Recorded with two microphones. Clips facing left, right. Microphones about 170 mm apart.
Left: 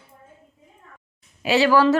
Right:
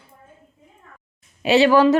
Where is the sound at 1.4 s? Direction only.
20° right (ahead or behind).